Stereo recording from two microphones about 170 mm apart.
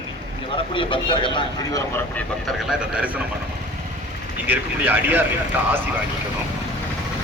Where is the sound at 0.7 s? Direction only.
30° left (ahead or behind).